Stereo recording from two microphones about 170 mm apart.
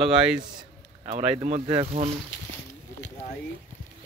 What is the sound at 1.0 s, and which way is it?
Speech, 40° right (ahead or behind).